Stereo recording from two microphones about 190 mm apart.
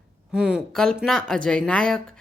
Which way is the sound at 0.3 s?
5° right (ahead or behind).